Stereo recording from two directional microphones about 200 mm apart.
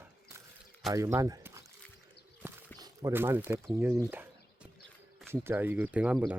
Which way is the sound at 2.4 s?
10° right (ahead or behind).